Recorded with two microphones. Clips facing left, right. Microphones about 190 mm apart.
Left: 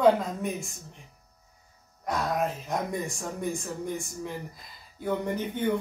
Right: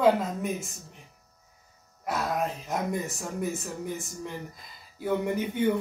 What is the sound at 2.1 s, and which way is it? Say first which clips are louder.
Speech: left 1 dB; 5° right (ahead or behind).